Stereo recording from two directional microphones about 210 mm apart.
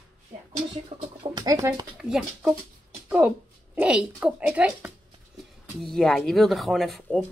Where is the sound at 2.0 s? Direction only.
5° right (ahead or behind).